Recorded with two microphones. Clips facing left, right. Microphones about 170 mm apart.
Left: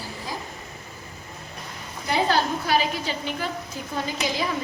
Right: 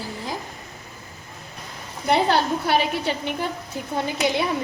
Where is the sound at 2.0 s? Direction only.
60° right (ahead or behind).